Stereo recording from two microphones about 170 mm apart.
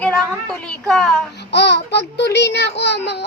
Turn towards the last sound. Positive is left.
turn(degrees=85)